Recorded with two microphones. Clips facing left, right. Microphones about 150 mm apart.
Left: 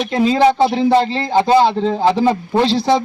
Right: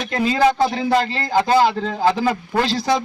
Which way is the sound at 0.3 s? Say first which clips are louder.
Left 3 dB; 25° left (ahead or behind).